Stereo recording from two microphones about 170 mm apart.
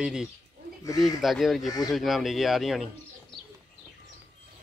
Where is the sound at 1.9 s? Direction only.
Centre (ahead or behind).